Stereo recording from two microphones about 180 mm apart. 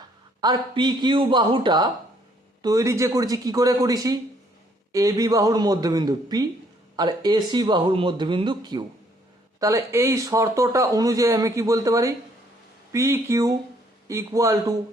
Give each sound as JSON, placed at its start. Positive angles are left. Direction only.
{"t": 0.4, "sound": "speech", "side_deg": -25}